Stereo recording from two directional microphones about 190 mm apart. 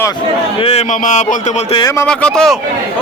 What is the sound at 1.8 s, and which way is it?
Speech, 15° left (ahead or behind).